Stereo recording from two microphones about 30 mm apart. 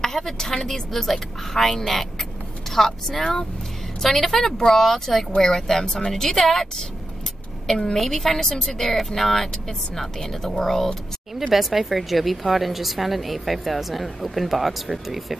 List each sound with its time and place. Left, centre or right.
0.0 s a woman's voice: centre
10.6 s a woman's voice: centre
11.5 s a woman's voice: centre